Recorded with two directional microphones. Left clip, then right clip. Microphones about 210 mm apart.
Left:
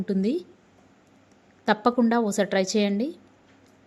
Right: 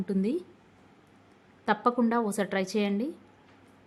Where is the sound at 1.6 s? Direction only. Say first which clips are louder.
Left 4 dB; 15° left (ahead or behind).